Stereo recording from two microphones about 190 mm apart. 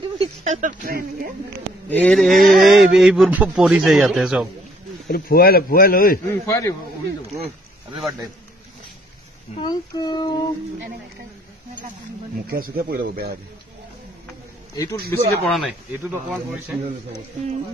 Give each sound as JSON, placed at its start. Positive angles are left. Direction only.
{"t": 0.2, "sound": "a sound", "side_deg": -35}
{"t": 1.9, "sound": "a man's voice", "side_deg": 5}
{"t": 5.0, "sound": "speech", "side_deg": 55}
{"t": 6.2, "sound": "speech", "side_deg": 15}
{"t": 9.6, "sound": "speech", "side_deg": 20}
{"t": 12.4, "sound": "speech", "side_deg": -50}
{"t": 15.0, "sound": "speech", "side_deg": -55}
{"t": 15.3, "sound": "speech", "side_deg": 5}
{"t": 16.0, "sound": "speech", "side_deg": -10}